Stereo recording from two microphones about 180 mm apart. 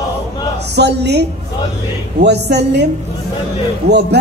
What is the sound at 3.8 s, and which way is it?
Speech, 65° right (ahead or behind).